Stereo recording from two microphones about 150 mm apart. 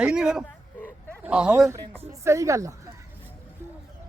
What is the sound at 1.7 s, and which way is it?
Speech, 20° right (ahead or behind).